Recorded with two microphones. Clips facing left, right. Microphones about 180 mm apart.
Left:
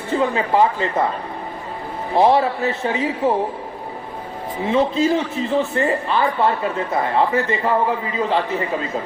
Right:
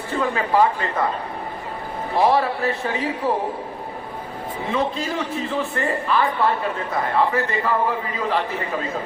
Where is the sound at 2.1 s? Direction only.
25° left (ahead or behind).